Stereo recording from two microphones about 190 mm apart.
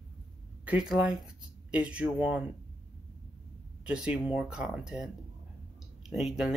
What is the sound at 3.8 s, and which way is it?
Speech, 5° right (ahead or behind).